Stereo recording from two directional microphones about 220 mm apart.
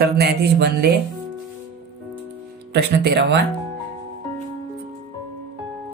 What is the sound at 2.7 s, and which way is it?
Speech, 50° right (ahead or behind).